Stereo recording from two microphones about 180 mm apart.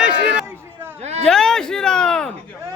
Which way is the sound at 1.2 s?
5° left (ahead or behind).